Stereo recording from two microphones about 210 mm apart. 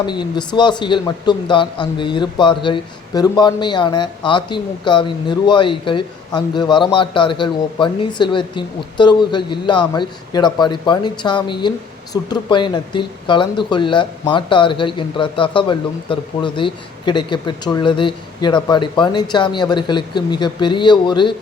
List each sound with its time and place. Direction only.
0.0 s speech: 20° left (ahead or behind)